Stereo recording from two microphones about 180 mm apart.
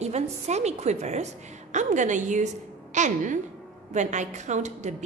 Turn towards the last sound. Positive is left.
turn(degrees=-40)  # may be behind; listen again after turning